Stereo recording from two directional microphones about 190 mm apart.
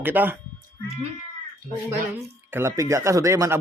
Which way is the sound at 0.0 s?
10° right (ahead or behind).